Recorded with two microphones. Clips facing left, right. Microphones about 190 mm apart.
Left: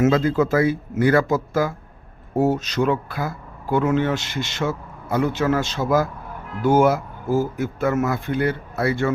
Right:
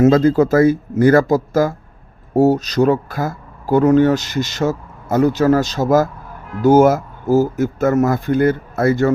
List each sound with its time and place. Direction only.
0.0 s speech: 40° right (ahead or behind)